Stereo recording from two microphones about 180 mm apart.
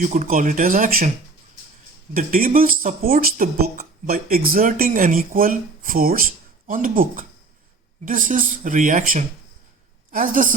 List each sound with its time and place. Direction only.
0.0 s speech: 45° right (ahead or behind)
2.1 s a woman's voice: 50° right (ahead or behind)